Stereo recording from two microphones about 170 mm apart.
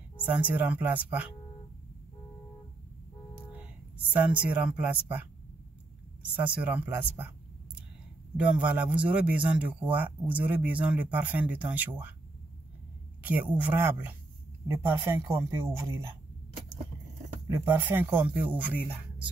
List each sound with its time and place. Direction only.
0.2 s a man's voice: 10° right (ahead or behind)
4.1 s a man's voice: 10° right (ahead or behind)
6.3 s a man's voice: 10° right (ahead or behind)
7.2 s a sound: 10° right (ahead or behind)
8.4 s a man's voice: 10° right (ahead or behind)
13.2 s a man's voice: 10° right (ahead or behind)
17.5 s a man's voice: 15° right (ahead or behind)